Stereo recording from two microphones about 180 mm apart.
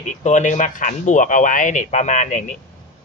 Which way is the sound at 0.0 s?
40° left (ahead or behind).